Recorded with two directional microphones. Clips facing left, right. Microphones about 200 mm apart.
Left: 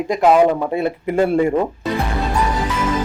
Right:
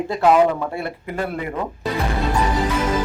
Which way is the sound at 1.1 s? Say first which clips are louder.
Left 11 dB; 25° left (ahead or behind).